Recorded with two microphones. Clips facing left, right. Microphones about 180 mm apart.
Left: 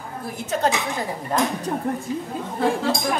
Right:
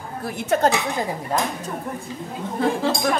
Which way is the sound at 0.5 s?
60° right (ahead or behind).